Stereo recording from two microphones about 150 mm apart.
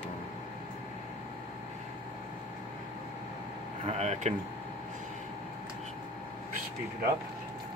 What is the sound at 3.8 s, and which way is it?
Speech, 50° right (ahead or behind).